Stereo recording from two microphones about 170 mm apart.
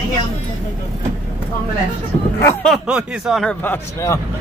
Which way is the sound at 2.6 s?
5° right (ahead or behind).